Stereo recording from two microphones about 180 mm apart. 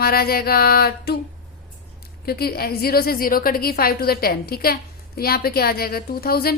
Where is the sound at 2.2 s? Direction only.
60° left (ahead or behind).